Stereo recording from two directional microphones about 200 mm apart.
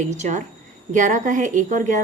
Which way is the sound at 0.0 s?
35° right (ahead or behind).